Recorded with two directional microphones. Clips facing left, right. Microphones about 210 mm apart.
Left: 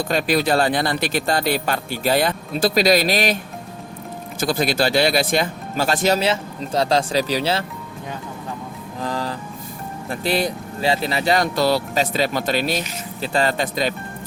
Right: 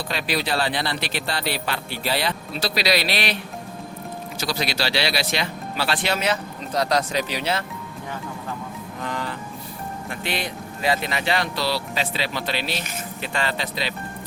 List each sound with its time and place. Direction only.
0.1 s speech: 45° left (ahead or behind)
4.4 s speech: 50° left (ahead or behind)
6.2 s speech: 30° left (ahead or behind)
9.0 s music: 35° left (ahead or behind)
10.1 s speech: 35° left (ahead or behind)